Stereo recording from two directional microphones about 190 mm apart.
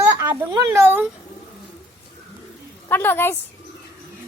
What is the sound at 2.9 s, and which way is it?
Speech, 10° left (ahead or behind).